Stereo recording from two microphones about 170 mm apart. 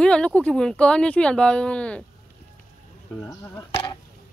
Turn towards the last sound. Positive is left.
turn(degrees=15)  # may be behind; listen again after turning